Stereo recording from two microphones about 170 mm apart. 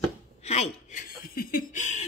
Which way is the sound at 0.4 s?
40° left (ahead or behind).